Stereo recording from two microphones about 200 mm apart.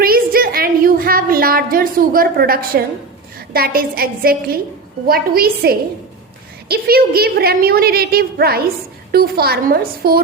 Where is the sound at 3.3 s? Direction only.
50° right (ahead or behind).